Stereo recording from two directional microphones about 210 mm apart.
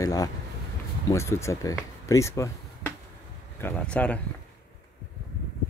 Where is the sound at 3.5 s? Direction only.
10° left (ahead or behind).